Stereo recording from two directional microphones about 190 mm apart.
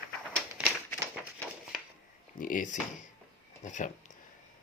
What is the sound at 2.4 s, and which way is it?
Speech, 45° left (ahead or behind).